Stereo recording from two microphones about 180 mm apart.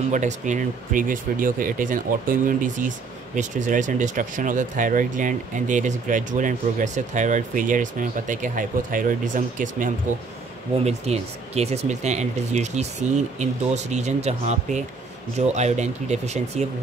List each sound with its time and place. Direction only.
0.1 s speech: 45° right (ahead or behind)